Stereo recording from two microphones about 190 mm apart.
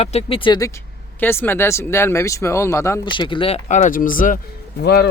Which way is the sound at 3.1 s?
25° left (ahead or behind).